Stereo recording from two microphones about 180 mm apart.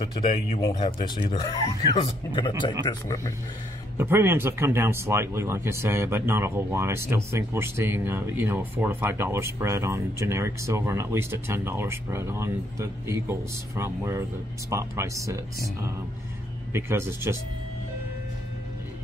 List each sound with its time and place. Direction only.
0.0 s speech: 35° left (ahead or behind)
4.0 s speech: 15° right (ahead or behind)
16.7 s speech: 15° right (ahead or behind)